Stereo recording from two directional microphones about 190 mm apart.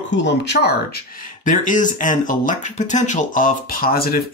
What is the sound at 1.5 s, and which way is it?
Speech, 45° left (ahead or behind).